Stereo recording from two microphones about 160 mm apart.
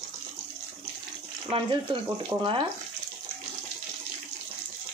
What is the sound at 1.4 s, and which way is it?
Speech, 30° right (ahead or behind).